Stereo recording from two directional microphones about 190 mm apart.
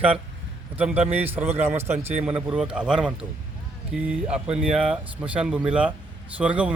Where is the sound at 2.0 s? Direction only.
35° right (ahead or behind).